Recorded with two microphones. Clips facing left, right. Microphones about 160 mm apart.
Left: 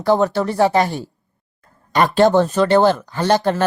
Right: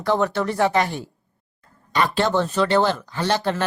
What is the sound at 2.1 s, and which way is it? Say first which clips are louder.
Speech: left 8 dB; 45° left (ahead or behind).